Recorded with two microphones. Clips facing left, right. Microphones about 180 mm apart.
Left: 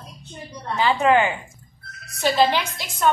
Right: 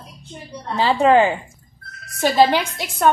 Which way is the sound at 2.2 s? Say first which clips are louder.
Right 4 dB; 50° right (ahead or behind).